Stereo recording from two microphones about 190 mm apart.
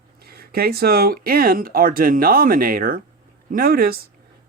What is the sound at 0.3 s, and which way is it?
Speech, 55° right (ahead or behind).